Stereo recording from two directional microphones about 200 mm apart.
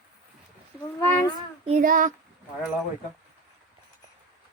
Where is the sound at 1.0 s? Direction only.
10° left (ahead or behind).